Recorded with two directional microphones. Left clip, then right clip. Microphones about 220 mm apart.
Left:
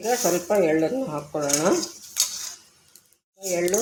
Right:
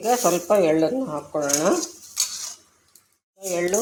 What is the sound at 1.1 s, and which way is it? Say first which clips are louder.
Speech: right 1 dB; centre (ahead or behind).